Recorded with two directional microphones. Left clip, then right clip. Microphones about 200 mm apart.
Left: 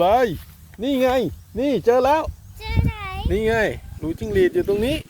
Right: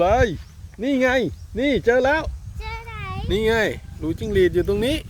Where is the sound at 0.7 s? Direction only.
5° right (ahead or behind).